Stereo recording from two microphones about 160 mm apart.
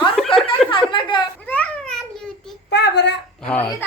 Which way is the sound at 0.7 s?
30° left (ahead or behind).